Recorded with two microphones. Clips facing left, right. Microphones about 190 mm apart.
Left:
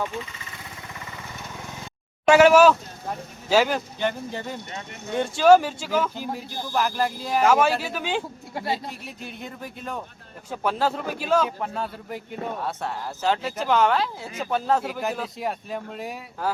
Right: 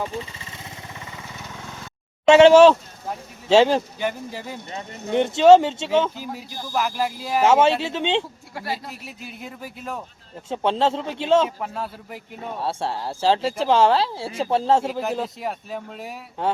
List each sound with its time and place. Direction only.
0.0 s vehicle: 30° right (ahead or behind)
2.2 s speech: 25° right (ahead or behind)
4.0 s speech: 5° right (ahead or behind)
5.1 s speech: 20° right (ahead or behind)
6.1 s speech: 5° right (ahead or behind)
7.4 s speech: 25° right (ahead or behind)
8.5 s speech: 25° left (ahead or behind)
8.9 s speech: 5° right (ahead or behind)
10.5 s speech: 25° right (ahead or behind)
11.4 s speech: centre (ahead or behind)
12.5 s speech: 30° right (ahead or behind)
15.2 s speech: centre (ahead or behind)